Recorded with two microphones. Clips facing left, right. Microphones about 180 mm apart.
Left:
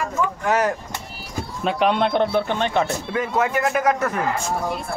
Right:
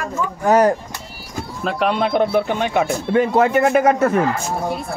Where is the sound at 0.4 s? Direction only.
35° right (ahead or behind).